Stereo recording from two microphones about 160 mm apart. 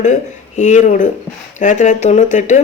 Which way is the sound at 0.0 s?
50° left (ahead or behind).